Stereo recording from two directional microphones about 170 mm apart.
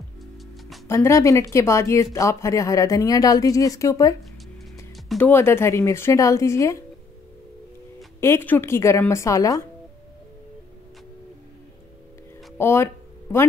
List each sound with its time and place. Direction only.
0.8 s speech: 15° left (ahead or behind)
4.9 s speech: 5° left (ahead or behind)
8.2 s speech: 15° left (ahead or behind)
12.5 s a sound: 15° left (ahead or behind)